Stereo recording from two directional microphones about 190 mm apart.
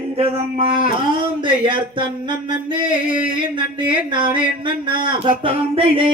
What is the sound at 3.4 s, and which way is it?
Speech, 25° right (ahead or behind).